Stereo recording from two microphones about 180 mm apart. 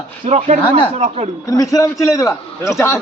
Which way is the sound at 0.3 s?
40° right (ahead or behind).